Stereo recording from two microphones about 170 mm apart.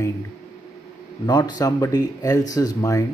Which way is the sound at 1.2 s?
25° left (ahead or behind).